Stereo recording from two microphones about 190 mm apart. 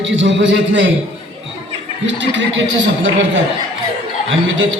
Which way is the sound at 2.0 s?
75° right (ahead or behind).